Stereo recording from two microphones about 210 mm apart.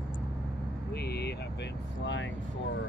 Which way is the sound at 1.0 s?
50° left (ahead or behind).